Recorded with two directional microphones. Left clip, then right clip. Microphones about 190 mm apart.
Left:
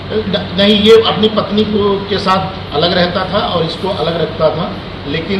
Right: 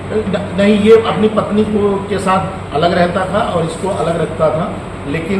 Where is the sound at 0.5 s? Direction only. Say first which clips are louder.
Left 2 dB; 15° right (ahead or behind).